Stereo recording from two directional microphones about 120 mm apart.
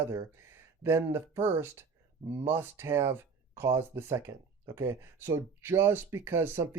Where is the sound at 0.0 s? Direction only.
20° right (ahead or behind).